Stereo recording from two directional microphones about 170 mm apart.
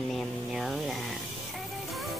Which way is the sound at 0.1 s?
Centre (ahead or behind).